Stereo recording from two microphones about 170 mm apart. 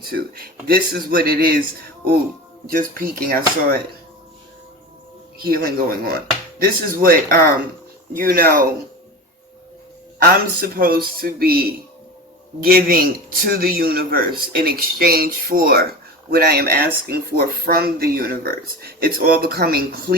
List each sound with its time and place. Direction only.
0.0 s a man's voice: 60° right (ahead or behind)
2.6 s a man's voice: 60° right (ahead or behind)
5.4 s a man's voice: 60° right (ahead or behind)
10.2 s a man's voice: 60° right (ahead or behind)